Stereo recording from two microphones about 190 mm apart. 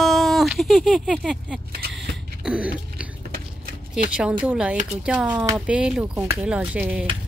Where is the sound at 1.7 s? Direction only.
60° right (ahead or behind).